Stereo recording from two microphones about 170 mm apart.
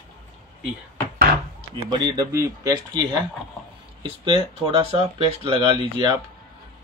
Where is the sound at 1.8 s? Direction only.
25° right (ahead or behind).